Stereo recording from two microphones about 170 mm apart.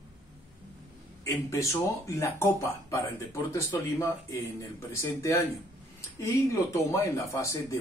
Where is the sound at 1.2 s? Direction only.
20° left (ahead or behind).